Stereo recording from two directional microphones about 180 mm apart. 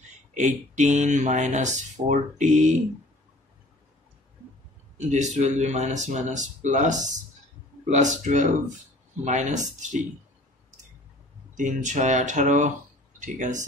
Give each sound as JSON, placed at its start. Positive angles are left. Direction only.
{"t": 0.3, "sound": "speech", "side_deg": -40}
{"t": 4.9, "sound": "speech", "side_deg": -40}
{"t": 11.5, "sound": "speech", "side_deg": -45}